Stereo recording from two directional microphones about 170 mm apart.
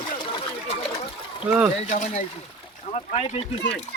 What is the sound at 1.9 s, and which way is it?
Speech, 50° left (ahead or behind).